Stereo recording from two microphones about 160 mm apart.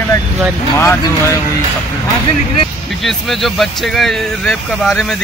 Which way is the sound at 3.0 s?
Centre (ahead or behind).